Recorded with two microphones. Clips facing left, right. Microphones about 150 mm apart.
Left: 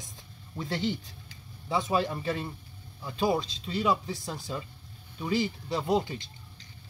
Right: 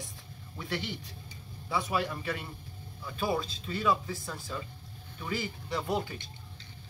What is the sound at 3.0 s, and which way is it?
Speech, 20° left (ahead or behind).